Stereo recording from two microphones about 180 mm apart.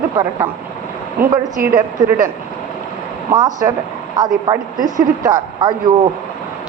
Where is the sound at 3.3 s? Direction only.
20° right (ahead or behind).